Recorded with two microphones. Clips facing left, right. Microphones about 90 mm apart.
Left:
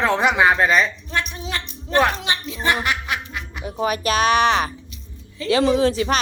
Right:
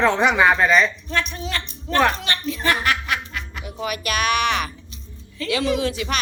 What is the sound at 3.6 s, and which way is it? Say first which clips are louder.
A woman's voice: left 6 dB; 35° left (ahead or behind).